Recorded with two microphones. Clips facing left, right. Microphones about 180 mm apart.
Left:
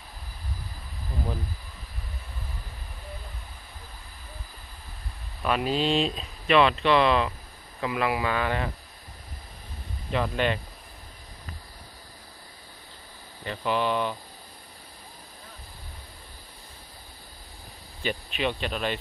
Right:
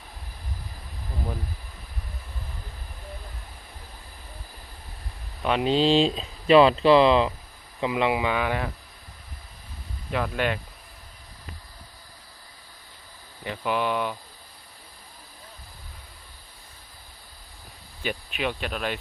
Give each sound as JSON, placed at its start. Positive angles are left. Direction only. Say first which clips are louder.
{"t": 5.4, "sound": "speech", "louder": "right 4 dB", "side_deg": -20}
{"t": 10.1, "sound": "speech", "louder": "even", "side_deg": -5}
{"t": 13.4, "sound": "speech", "louder": "even", "side_deg": -10}
{"t": 18.0, "sound": "speech", "louder": "left 1 dB", "side_deg": -10}